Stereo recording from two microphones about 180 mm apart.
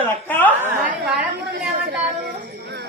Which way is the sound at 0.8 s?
10° right (ahead or behind).